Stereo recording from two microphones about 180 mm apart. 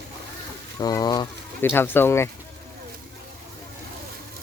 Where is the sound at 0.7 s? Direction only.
20° left (ahead or behind).